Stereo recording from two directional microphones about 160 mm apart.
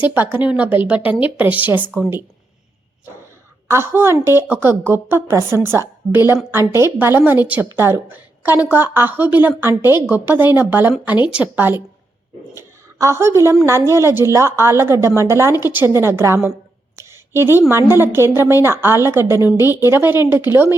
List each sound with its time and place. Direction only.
0.0 s a woman's voice: 10° right (ahead or behind)
3.7 s a woman's voice: 15° right (ahead or behind)
17.0 s a sound: 15° right (ahead or behind)
17.7 s a woman's voice: 15° right (ahead or behind)